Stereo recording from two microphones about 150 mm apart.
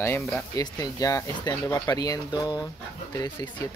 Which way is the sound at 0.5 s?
25° left (ahead or behind).